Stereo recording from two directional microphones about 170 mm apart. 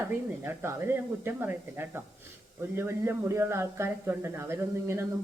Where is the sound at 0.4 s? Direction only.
15° right (ahead or behind).